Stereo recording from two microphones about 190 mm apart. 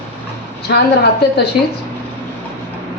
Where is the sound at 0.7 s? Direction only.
65° left (ahead or behind).